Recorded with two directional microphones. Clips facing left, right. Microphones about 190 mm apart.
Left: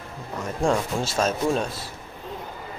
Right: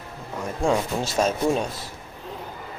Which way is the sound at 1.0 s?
15° right (ahead or behind).